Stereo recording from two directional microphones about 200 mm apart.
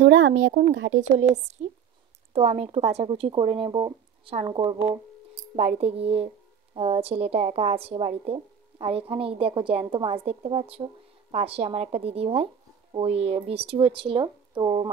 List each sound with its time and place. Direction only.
0.0 s speech: 75° right (ahead or behind)
0.9 s a woman's voice: 35° right (ahead or behind)